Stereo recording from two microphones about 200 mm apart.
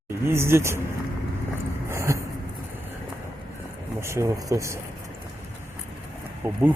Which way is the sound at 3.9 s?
15° right (ahead or behind).